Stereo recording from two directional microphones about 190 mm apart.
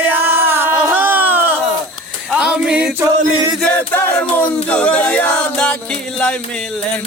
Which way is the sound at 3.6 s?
5° left (ahead or behind).